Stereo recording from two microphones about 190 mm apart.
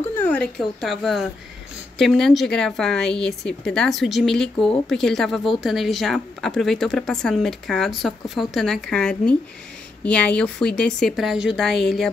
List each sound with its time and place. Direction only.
0.1 s speech: 10° left (ahead or behind)